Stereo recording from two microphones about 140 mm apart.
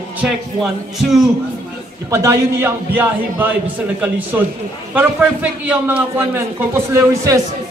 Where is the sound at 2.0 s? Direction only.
20° right (ahead or behind).